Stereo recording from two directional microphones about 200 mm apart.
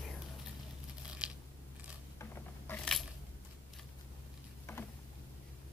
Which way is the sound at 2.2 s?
10° left (ahead or behind).